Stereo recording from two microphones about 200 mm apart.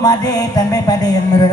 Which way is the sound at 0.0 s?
20° left (ahead or behind).